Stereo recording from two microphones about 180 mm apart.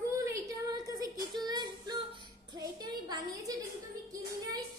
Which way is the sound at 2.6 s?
20° right (ahead or behind).